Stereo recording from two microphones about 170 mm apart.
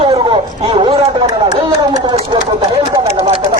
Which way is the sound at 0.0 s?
35° right (ahead or behind).